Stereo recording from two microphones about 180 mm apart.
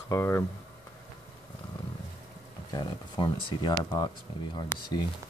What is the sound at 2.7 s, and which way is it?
Speech, 25° left (ahead or behind).